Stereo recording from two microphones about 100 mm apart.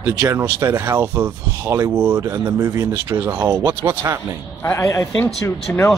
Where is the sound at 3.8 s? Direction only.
30° right (ahead or behind).